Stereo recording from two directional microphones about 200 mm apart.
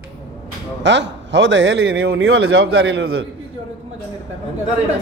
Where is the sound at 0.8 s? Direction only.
65° right (ahead or behind).